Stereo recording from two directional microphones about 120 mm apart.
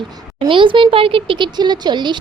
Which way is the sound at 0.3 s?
45° right (ahead or behind).